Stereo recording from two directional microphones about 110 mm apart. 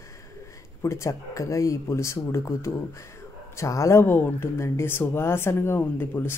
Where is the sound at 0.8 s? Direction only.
25° left (ahead or behind).